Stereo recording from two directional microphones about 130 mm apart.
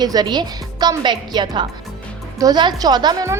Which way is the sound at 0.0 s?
30° right (ahead or behind).